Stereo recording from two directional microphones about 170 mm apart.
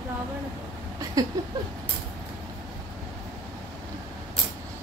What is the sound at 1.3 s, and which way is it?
Speech, 20° right (ahead or behind).